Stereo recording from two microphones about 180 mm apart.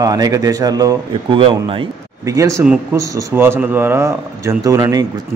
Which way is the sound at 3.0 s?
15° right (ahead or behind).